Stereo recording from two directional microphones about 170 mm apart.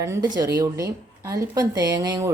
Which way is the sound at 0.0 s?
20° right (ahead or behind).